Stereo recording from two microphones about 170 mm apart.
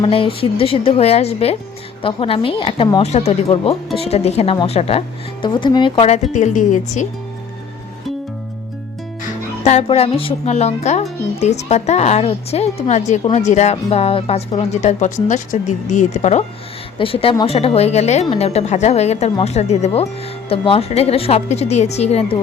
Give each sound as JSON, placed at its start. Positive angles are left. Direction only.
{"t": 0.0, "sound": "speech", "side_deg": 30}
{"t": 3.0, "sound": "speech", "side_deg": 40}
{"t": 6.3, "sound": "speech", "side_deg": 45}
{"t": 9.6, "sound": "speech", "side_deg": 35}
{"t": 17.0, "sound": "speech", "side_deg": 35}